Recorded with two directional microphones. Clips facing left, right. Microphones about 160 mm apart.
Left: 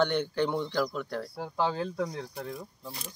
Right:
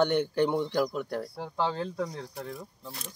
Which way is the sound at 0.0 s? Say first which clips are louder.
Right 2 dB; 15° right (ahead or behind).